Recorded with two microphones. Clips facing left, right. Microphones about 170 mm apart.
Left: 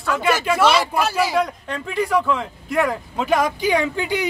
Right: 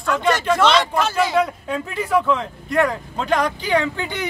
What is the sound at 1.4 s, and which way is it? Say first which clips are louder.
Speech: right 3 dB; 5° right (ahead or behind).